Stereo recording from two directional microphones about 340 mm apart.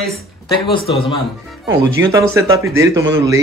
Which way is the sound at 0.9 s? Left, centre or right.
Centre.